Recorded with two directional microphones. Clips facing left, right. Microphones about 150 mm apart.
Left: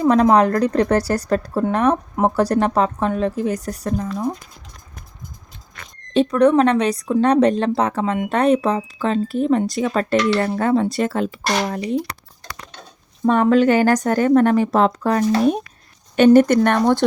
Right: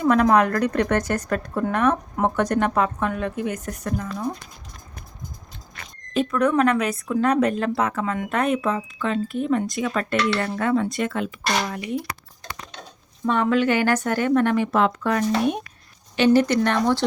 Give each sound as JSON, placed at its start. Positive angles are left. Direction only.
{"t": 0.0, "sound": "speech", "side_deg": 30}
{"t": 6.1, "sound": "speech", "side_deg": 30}
{"t": 13.2, "sound": "speech", "side_deg": 40}
{"t": 16.1, "sound": "speech", "side_deg": 50}